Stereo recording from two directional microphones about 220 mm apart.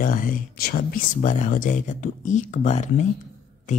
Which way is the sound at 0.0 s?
40° left (ahead or behind).